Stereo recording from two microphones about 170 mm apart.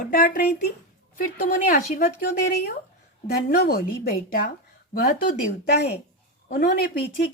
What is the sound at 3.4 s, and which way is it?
Speech, 60° left (ahead or behind).